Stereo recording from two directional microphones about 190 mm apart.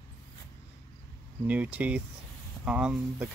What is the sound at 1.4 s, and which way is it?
Speech, 5° right (ahead or behind).